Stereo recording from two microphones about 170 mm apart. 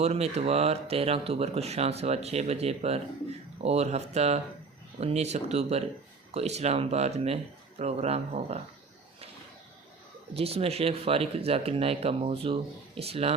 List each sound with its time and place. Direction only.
0.0 s speech: 40° right (ahead or behind)
10.3 s speech: 35° right (ahead or behind)